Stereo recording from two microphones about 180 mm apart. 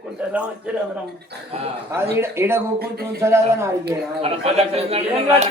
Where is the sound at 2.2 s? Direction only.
15° right (ahead or behind).